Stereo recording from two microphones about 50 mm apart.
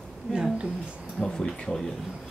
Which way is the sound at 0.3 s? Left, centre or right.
Centre.